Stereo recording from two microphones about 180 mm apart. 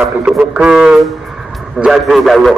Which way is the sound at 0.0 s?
5° right (ahead or behind).